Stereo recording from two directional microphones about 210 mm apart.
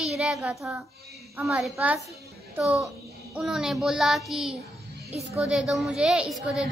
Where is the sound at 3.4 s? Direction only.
Centre (ahead or behind).